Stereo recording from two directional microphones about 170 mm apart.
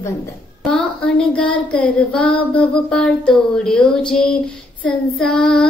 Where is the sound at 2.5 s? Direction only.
5° left (ahead or behind).